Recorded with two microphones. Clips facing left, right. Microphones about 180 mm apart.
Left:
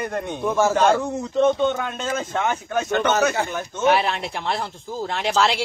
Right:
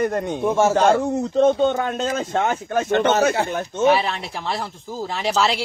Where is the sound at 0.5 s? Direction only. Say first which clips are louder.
Right 1 dB; 25° right (ahead or behind).